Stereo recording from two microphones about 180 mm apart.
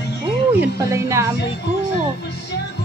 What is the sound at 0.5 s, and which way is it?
Speech, 15° right (ahead or behind).